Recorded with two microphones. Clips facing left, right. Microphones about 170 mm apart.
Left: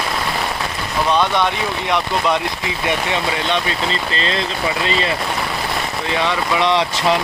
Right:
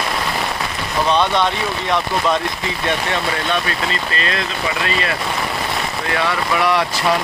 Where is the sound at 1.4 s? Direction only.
15° left (ahead or behind).